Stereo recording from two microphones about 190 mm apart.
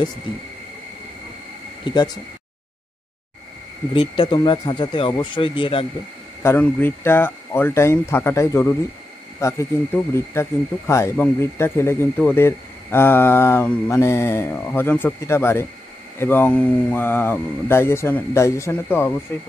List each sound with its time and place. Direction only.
1.9 s speech: 20° left (ahead or behind)
3.9 s speech: 30° left (ahead or behind)
6.4 s speech: 10° left (ahead or behind)